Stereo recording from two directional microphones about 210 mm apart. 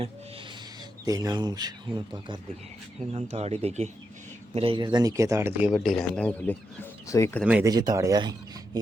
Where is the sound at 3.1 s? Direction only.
30° right (ahead or behind); by 5.7 s 10° right (ahead or behind).